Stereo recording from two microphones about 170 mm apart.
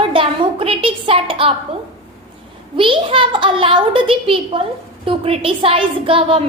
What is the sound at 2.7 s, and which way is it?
A woman's voice, 30° right (ahead or behind).